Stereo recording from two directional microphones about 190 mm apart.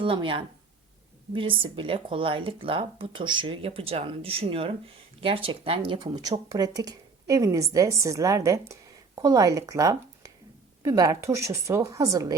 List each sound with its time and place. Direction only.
0.0 s a woman's voice: 25° right (ahead or behind)